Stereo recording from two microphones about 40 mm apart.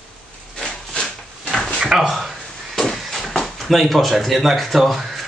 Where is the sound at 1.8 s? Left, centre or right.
Centre.